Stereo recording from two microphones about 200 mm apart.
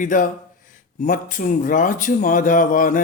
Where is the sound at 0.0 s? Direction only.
40° left (ahead or behind).